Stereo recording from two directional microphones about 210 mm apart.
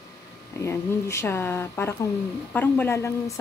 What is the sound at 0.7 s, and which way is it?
Speech, 10° left (ahead or behind).